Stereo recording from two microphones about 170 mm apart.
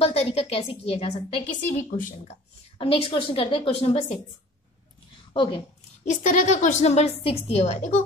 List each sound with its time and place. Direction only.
0.0 s a woman's voice: 35° left (ahead or behind)
2.8 s a woman's voice: 30° left (ahead or behind)
5.3 s a woman's voice: 30° left (ahead or behind)
6.0 s a woman's voice: 45° left (ahead or behind)